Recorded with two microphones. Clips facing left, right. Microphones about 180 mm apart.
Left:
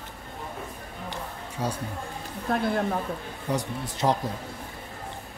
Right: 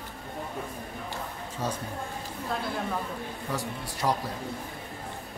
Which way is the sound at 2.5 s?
55° left (ahead or behind).